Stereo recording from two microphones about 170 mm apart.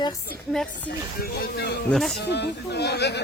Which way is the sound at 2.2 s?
80° left.